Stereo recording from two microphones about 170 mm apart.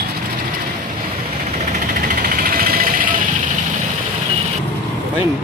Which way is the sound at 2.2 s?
60° right (ahead or behind).